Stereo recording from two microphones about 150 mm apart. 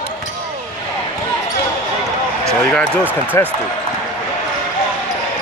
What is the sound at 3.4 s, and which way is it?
Speech, 15° left (ahead or behind).